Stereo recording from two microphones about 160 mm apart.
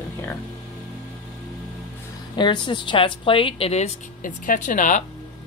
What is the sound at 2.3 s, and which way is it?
Speech, 30° left (ahead or behind).